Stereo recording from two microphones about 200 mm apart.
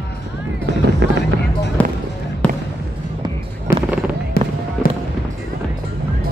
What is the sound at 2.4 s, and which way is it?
Basketball bounce, 5° left (ahead or behind).